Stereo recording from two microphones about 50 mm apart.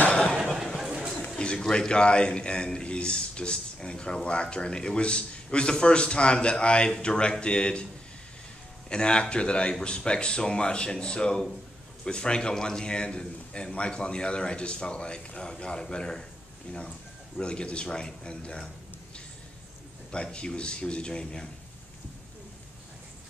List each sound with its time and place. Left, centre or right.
0.1 s a sound: centre
0.7 s a sound: centre
1.4 s a man's voice: centre
8.8 s a man's voice: centre
17.4 s a man's voice: centre
20.1 s a man's voice: centre